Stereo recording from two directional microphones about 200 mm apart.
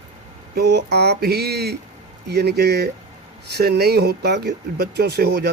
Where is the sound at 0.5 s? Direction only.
55° right (ahead or behind).